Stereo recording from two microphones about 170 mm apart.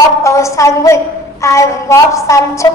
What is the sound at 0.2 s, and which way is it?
A woman's voice, 15° left (ahead or behind).